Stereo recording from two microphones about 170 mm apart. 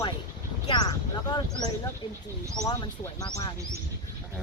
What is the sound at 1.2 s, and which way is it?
Speech, 25° left (ahead or behind).